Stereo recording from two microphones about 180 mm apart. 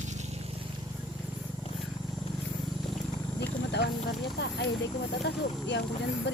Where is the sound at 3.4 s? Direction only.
65° left (ahead or behind).